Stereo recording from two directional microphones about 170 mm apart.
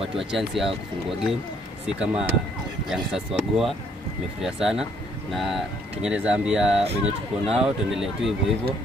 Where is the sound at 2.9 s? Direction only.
Centre (ahead or behind).